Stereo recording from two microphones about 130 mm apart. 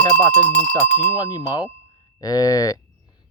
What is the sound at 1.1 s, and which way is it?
Speech, 30° left (ahead or behind).